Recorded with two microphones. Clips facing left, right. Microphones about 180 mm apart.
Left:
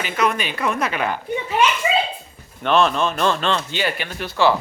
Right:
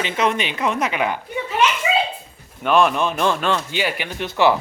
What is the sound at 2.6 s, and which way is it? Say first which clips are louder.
Speech: right 1 dB; 10° right (ahead or behind).